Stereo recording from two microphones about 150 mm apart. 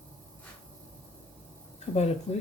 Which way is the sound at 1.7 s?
45° left (ahead or behind).